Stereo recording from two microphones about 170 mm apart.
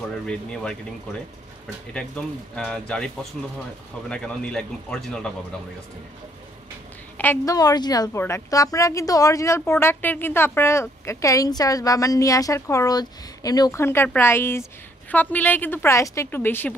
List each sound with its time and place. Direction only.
0.3 s speech: 5° left (ahead or behind)
2.0 s speech: 5° left (ahead or behind)
7.2 s a woman's voice: 10° left (ahead or behind)
7.5 s a woman's voice: 25° left (ahead or behind)